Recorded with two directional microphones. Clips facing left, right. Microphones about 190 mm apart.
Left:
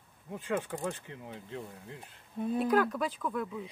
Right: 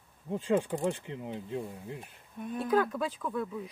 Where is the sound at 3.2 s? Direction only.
10° right (ahead or behind).